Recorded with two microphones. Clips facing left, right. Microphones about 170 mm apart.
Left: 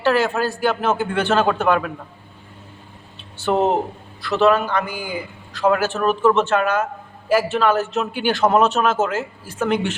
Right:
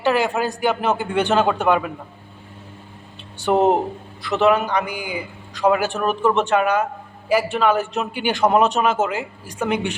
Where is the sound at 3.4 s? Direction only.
15° right (ahead or behind).